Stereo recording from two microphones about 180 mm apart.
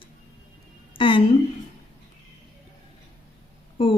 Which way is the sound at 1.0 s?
30° left (ahead or behind).